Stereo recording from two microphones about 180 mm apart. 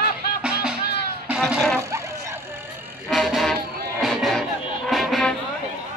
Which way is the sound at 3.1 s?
Centre (ahead or behind).